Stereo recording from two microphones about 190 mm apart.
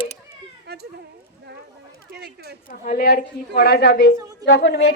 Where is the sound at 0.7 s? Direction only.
60° right (ahead or behind).